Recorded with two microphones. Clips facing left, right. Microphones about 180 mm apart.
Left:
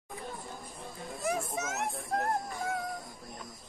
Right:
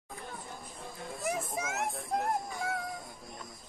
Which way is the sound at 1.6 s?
15° right (ahead or behind).